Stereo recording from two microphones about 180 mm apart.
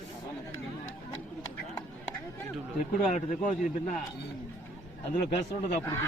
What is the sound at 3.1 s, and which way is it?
Speech, 45° left (ahead or behind).